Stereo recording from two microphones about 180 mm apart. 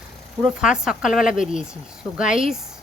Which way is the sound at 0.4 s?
5° right (ahead or behind).